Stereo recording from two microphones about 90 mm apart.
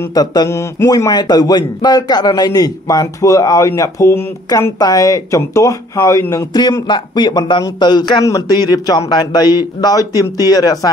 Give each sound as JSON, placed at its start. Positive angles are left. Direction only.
{"t": 0.1, "sound": "a man's voice", "side_deg": 45}
{"t": 0.5, "sound": "a man's voice", "side_deg": 30}
{"t": 4.5, "sound": "speech", "side_deg": 40}
{"t": 6.5, "sound": "a man's voice", "side_deg": 50}